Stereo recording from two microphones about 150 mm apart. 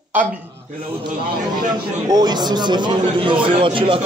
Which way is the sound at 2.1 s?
25° right (ahead or behind).